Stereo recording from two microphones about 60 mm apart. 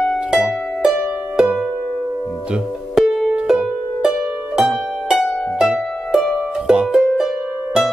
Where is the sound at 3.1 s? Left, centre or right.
Centre.